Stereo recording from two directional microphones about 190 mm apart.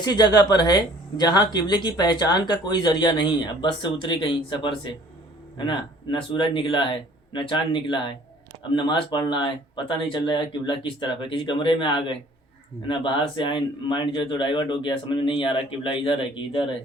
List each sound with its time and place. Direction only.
0.0 s speech: 20° left (ahead or behind)